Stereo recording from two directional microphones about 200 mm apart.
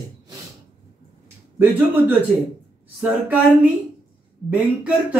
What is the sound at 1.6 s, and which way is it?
Speech, 10° right (ahead or behind).